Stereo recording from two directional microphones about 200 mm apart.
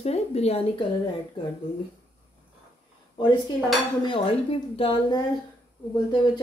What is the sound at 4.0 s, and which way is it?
Speech, 25° left (ahead or behind).